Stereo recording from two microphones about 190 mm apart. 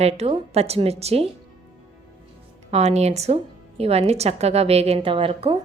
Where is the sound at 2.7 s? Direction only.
35° right (ahead or behind).